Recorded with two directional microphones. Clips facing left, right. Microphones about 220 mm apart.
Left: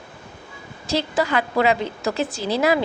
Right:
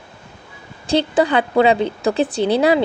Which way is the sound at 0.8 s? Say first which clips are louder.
Right 6 dB; 30° right (ahead or behind).